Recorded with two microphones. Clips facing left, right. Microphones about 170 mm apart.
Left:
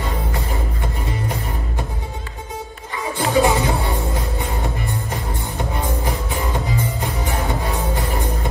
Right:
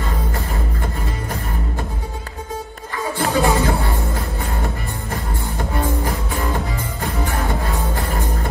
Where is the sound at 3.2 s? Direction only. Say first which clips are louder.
Left 1 dB; 20° left (ahead or behind).